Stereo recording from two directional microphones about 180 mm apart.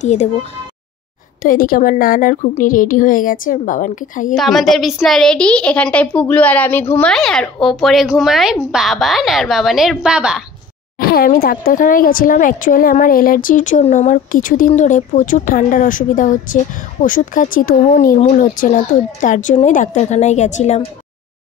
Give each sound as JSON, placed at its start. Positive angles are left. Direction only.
{"t": 0.0, "sound": "speech", "side_deg": 40}
{"t": 1.4, "sound": "speech", "side_deg": 50}
{"t": 4.4, "sound": "a woman's voice", "side_deg": 0}
{"t": 11.0, "sound": "speech", "side_deg": 55}